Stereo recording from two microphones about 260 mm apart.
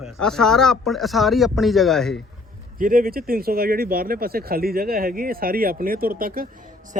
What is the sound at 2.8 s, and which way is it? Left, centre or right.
Speech, right.